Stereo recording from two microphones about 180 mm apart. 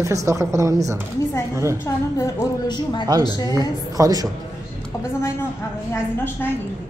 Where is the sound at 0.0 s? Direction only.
15° right (ahead or behind).